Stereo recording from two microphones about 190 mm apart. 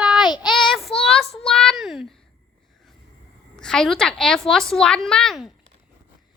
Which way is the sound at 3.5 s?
5° left (ahead or behind).